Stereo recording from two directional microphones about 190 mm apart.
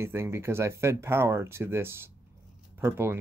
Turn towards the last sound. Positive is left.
turn(degrees=-10)  # may be behind; listen again after turning